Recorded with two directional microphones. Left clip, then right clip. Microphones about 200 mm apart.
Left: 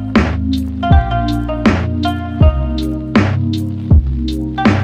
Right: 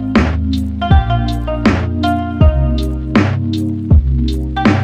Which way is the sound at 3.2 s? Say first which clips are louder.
Right 1 dB; 30° right (ahead or behind).